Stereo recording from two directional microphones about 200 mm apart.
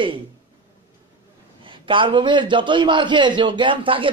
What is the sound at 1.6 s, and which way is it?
A man's voice, 25° right (ahead or behind).